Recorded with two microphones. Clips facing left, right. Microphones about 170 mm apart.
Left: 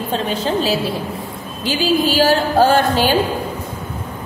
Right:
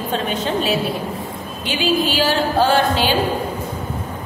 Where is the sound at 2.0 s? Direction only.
40° left (ahead or behind).